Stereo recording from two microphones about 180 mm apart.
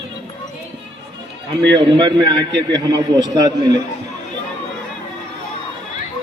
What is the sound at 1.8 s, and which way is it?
A man's voice, 25° right (ahead or behind).